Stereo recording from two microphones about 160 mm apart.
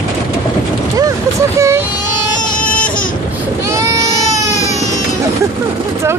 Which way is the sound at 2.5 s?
10° left (ahead or behind).